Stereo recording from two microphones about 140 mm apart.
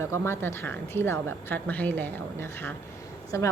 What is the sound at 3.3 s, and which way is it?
Speech, 20° left (ahead or behind).